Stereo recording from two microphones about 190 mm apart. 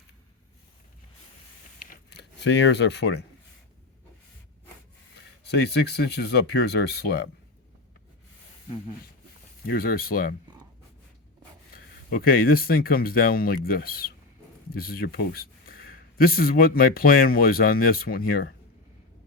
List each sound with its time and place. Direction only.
1.9 s a sound: 60° left (ahead or behind)
5.4 s speech: 60° left (ahead or behind)
9.6 s speech: 50° left (ahead or behind)
12.1 s speech: 50° left (ahead or behind)